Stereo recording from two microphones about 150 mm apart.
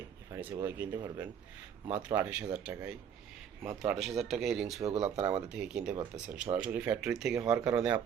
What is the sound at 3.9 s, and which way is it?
Speech, centre (ahead or behind).